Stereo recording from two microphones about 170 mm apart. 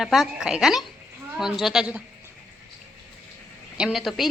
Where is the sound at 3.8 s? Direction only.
Centre (ahead or behind).